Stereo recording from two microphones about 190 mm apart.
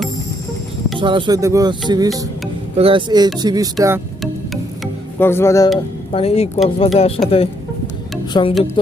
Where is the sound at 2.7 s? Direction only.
30° right (ahead or behind).